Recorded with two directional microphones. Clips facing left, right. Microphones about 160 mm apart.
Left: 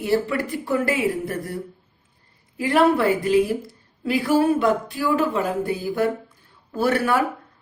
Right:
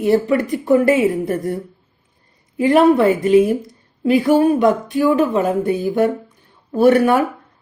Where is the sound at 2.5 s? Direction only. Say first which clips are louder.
Right 6 dB; 20° right (ahead or behind).